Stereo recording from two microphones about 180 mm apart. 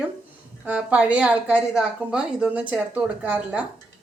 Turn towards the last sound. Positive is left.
turn(degrees=-5)  # may be behind; listen again after turning